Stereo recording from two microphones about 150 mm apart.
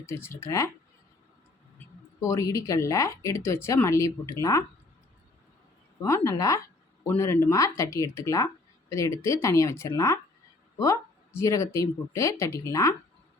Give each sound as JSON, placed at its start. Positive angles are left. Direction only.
{"t": 0.0, "sound": "speech", "side_deg": 15}
{"t": 2.2, "sound": "speech", "side_deg": 20}
{"t": 6.0, "sound": "speech", "side_deg": 20}